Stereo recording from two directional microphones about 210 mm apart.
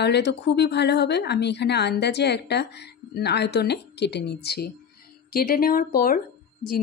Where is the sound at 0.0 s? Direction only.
55° left (ahead or behind).